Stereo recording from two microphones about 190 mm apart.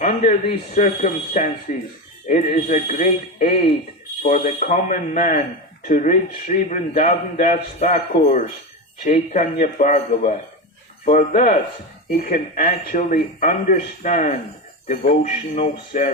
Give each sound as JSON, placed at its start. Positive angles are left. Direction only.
{"t": 0.0, "sound": "a man's voice", "side_deg": 40}